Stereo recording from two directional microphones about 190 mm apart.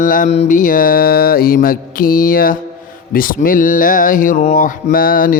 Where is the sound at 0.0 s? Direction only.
45° left (ahead or behind).